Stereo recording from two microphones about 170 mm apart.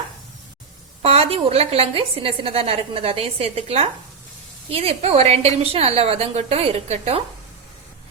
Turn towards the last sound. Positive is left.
turn(degrees=-40)  # may be behind; listen again after turning